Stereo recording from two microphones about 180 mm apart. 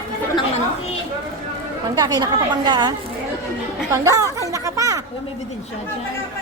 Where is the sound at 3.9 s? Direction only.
20° right (ahead or behind).